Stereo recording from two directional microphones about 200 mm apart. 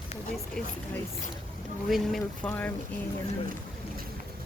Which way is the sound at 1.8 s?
Centre (ahead or behind).